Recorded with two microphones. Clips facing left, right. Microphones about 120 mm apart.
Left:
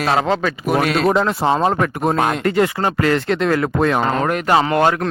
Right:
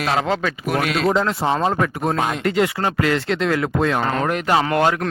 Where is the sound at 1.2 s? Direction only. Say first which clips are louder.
Left 3 dB; 60° left (ahead or behind).